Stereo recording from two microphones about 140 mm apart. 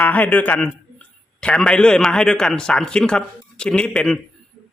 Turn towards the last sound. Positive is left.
turn(degrees=5)  # may be behind; listen again after turning